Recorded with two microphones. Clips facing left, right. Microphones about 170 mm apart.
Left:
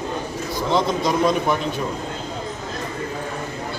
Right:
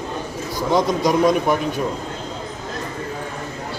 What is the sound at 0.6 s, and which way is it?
Speech, 15° right (ahead or behind).